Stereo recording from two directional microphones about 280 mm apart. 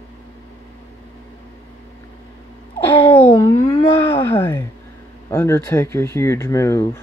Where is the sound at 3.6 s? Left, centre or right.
Centre.